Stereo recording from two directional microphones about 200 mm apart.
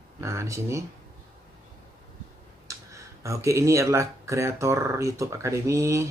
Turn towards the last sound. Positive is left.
turn(degrees=-15)  # may be behind; listen again after turning